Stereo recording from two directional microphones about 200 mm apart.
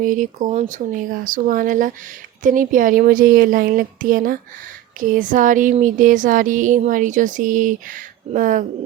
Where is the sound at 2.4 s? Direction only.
40° right (ahead or behind).